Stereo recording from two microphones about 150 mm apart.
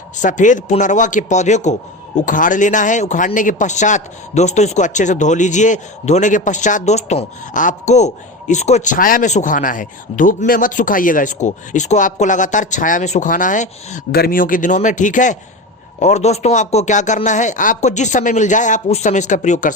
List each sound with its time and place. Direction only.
0.2 s a man's voice: 55° left (ahead or behind)
14.1 s a man's voice: 80° left; by 19.7 s 55° left (ahead or behind)